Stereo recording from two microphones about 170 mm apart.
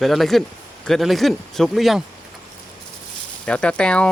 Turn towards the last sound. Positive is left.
turn(degrees=5)  # may be behind; listen again after turning